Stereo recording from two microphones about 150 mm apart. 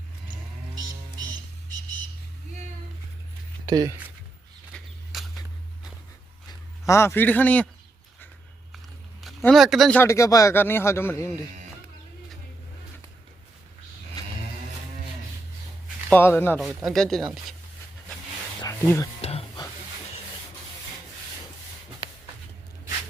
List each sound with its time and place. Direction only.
3.7 s speech: 25° right (ahead or behind)
4.7 s a sound: centre (ahead or behind)
6.5 s speech: 20° left (ahead or behind)
9.5 s speech: centre (ahead or behind)
10.0 s a man's voice: 20° left (ahead or behind)
16.0 s a man's voice: 15° left (ahead or behind)
16.6 s speech: centre (ahead or behind)
18.6 s a sound: 20° left (ahead or behind)